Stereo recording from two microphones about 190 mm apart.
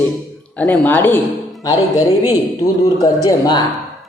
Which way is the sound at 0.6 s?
5° left (ahead or behind).